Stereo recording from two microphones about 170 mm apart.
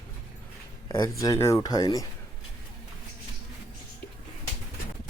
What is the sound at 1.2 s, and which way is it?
Speech, 15° left (ahead or behind).